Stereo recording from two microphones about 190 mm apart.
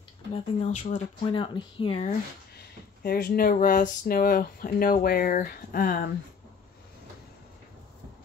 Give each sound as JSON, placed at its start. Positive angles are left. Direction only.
{"t": 0.3, "sound": "speech", "side_deg": 35}
{"t": 1.3, "sound": "speech", "side_deg": 25}
{"t": 3.0, "sound": "speech", "side_deg": 50}